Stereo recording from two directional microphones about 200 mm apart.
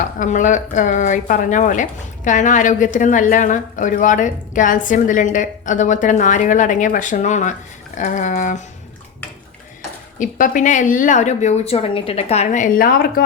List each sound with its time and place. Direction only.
0.2 s speech: 40° left (ahead or behind)
10.2 s speech: 40° left (ahead or behind)